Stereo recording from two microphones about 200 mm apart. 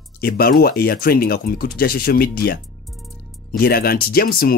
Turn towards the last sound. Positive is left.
turn(degrees=50)  # may be behind; listen again after turning